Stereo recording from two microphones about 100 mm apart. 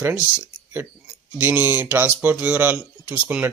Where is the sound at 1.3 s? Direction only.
20° right (ahead or behind).